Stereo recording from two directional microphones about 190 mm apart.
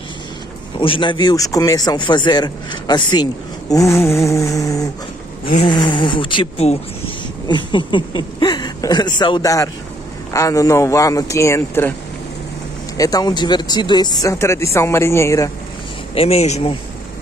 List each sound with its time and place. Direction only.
0.7 s a man's voice: 25° left (ahead or behind)
5.4 s a sound: 45° left (ahead or behind)
5.7 s a man's voice: 25° left (ahead or behind)
12.9 s speech: 20° left (ahead or behind)
16.2 s speech: 35° left (ahead or behind)